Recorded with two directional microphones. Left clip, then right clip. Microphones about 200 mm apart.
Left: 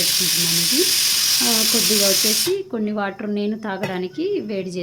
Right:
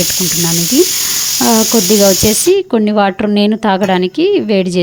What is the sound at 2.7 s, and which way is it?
A woman's voice, 40° right (ahead or behind).